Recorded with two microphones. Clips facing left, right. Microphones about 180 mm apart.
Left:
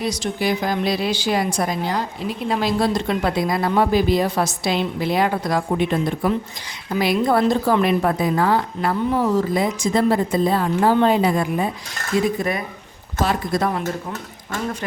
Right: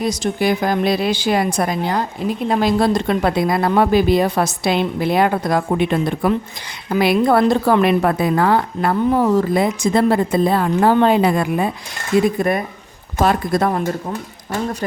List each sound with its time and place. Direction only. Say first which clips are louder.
0.0 s a woman's voice: right 4 dB; 50° right (ahead or behind); by 11.7 s 65° right (ahead or behind)
12.4 s speech: right 5 dB; 50° right (ahead or behind)